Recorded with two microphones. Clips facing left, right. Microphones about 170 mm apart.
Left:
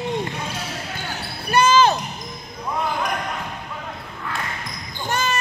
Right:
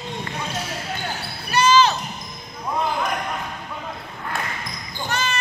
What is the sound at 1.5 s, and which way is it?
Basketball bounce, 50° left (ahead or behind).